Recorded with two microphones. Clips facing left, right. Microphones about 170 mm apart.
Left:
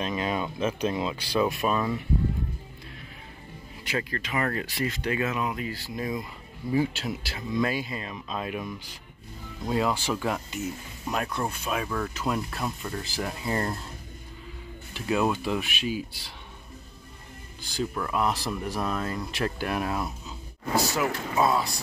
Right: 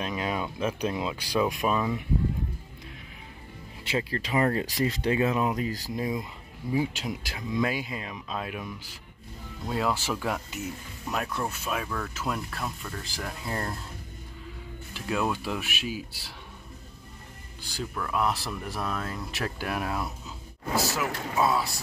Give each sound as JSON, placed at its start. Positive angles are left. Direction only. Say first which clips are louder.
{"t": 0.0, "sound": "speech", "louder": "left 2 dB", "side_deg": -5}
{"t": 3.8, "sound": "speech", "louder": "right 1 dB", "side_deg": -30}
{"t": 5.9, "sound": "speech", "louder": "left 1 dB", "side_deg": -15}
{"t": 11.6, "sound": "speech", "louder": "left 2 dB", "side_deg": 0}
{"t": 15.0, "sound": "speech", "louder": "left 3 dB", "side_deg": 5}
{"t": 17.9, "sound": "speech", "louder": "right 1 dB", "side_deg": 0}